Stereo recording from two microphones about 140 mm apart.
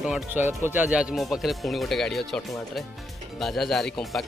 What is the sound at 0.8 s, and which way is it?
Speech, 5° right (ahead or behind).